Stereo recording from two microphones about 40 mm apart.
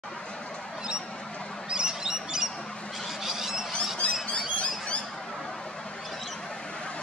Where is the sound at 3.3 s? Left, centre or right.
Centre.